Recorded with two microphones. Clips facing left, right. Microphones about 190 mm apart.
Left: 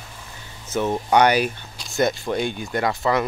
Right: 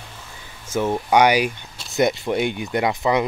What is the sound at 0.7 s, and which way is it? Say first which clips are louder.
Speech: right 1 dB; 10° right (ahead or behind).